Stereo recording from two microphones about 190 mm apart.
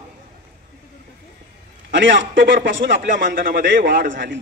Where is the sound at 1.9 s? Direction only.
70° right (ahead or behind).